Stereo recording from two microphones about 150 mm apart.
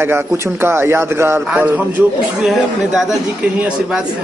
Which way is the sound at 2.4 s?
Centre (ahead or behind).